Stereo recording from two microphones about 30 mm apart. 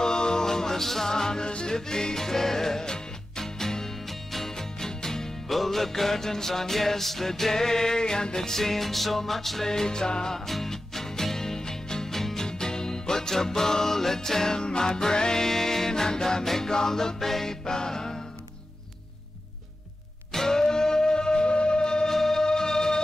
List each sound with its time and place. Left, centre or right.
0.0 s music: left
1.4 s music: left
4.1 s music: centre
4.5 s music: centre
5.5 s music: centre; by 8.4 s left
8.4 s music: centre
9.7 s music: left
10.4 s music: centre
12.4 s music: left
14.6 s music: left
15.4 s music: centre
20.3 s music: centre
22.0 s music: centre